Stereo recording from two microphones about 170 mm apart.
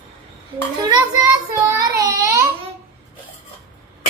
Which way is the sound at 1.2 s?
20° right (ahead or behind).